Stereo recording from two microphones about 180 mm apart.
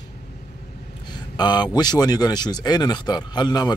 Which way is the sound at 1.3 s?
25° left (ahead or behind).